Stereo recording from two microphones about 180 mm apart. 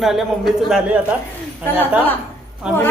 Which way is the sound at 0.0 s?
Centre (ahead or behind).